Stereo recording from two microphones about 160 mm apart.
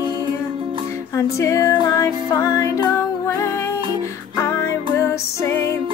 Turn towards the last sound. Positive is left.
turn(degrees=20)  # may be behind; listen again after turning